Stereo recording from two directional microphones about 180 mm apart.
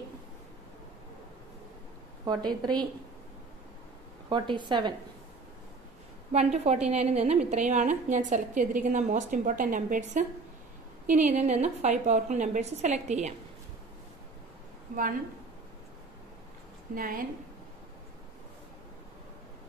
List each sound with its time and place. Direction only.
2.2 s a woman's voice: 25° right (ahead or behind)
4.3 s a woman's voice: 25° right (ahead or behind)
6.3 s a woman's voice: 40° right (ahead or behind)
16.9 s a woman's voice: 50° right (ahead or behind)